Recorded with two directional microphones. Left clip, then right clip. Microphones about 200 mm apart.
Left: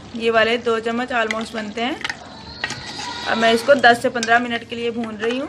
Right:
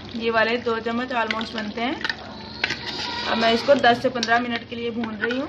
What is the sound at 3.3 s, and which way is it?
Speech, 20° left (ahead or behind).